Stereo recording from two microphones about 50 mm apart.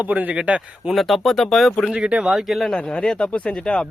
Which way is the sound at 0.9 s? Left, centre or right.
Centre.